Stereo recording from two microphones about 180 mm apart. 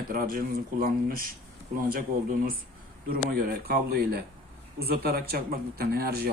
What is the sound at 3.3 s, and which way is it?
Speech, 55° right (ahead or behind).